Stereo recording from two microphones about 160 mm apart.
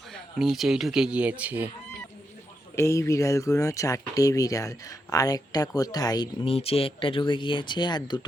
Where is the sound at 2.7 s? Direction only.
20° left (ahead or behind).